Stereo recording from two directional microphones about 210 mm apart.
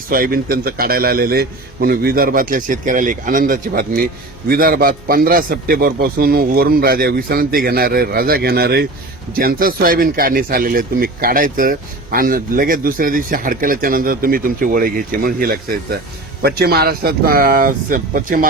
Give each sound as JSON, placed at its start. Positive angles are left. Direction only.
{"t": 0.1, "sound": "a man's voice", "side_deg": -45}